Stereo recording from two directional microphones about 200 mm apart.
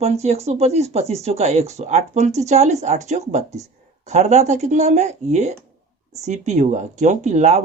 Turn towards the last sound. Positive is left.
turn(degrees=-35)  # may be behind; listen again after turning